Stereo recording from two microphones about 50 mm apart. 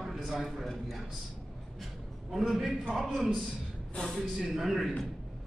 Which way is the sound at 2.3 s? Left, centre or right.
Centre.